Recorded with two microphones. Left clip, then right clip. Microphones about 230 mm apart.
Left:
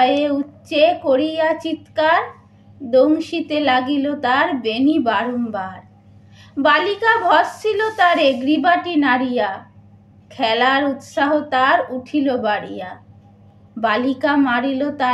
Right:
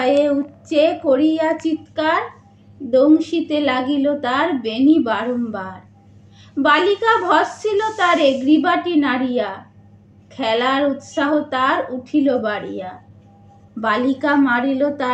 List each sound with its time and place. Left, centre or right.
0.0 s a woman's voice: left